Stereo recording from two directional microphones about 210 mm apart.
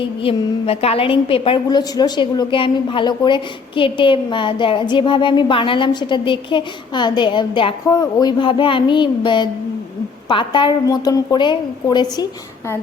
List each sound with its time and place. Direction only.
0.2 s a woman's voice: 25° left (ahead or behind)